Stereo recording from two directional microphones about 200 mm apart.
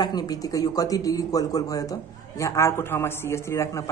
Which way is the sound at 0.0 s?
20° left (ahead or behind).